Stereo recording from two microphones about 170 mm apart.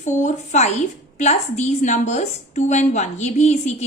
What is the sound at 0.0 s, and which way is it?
A woman's voice, 45° left (ahead or behind).